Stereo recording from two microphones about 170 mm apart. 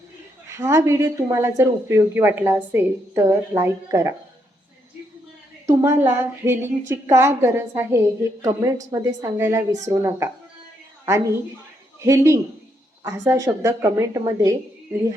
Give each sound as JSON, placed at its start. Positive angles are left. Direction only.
{"t": 0.5, "sound": "speech", "side_deg": -15}
{"t": 5.6, "sound": "speech", "side_deg": -15}
{"t": 11.9, "sound": "a woman's voice", "side_deg": -15}